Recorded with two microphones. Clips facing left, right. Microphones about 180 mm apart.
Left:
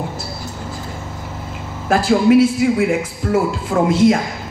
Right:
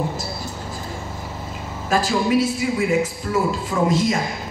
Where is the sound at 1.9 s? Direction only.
60° left (ahead or behind).